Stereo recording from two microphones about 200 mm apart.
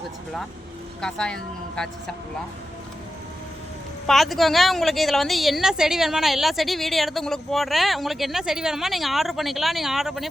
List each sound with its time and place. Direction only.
1.0 s a woman's voice: 5° left (ahead or behind)
4.0 s a woman's voice: centre (ahead or behind)